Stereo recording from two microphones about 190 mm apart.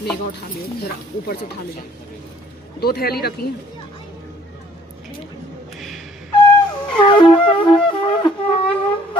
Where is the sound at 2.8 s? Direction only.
55° left (ahead or behind).